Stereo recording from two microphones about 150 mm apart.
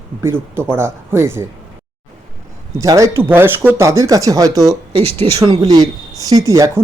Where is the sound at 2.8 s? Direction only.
20° right (ahead or behind).